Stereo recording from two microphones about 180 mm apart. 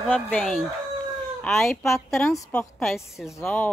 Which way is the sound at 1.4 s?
Centre (ahead or behind).